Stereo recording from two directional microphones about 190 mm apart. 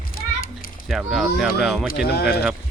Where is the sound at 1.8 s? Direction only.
55° left (ahead or behind).